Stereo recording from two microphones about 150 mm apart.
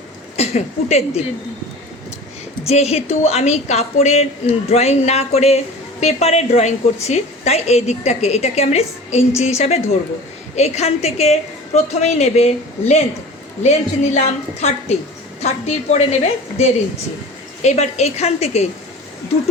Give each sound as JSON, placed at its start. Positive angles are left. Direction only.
{"t": 0.3, "sound": "speech", "side_deg": 45}
{"t": 2.6, "sound": "a woman's voice", "side_deg": 45}
{"t": 13.6, "sound": "a woman's voice", "side_deg": 50}